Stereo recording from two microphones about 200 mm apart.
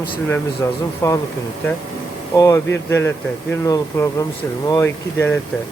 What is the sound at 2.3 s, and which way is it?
Speech, 15° left (ahead or behind).